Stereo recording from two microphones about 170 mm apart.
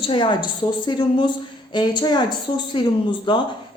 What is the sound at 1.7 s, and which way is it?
A woman's voice, 25° left (ahead or behind).